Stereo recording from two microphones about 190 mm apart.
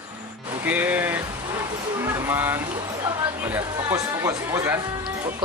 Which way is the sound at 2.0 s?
15° right (ahead or behind).